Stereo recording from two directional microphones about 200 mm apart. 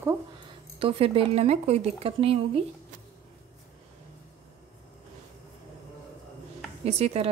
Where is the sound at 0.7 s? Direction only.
30° right (ahead or behind).